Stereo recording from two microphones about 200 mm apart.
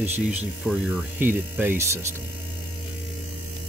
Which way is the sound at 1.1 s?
10° right (ahead or behind).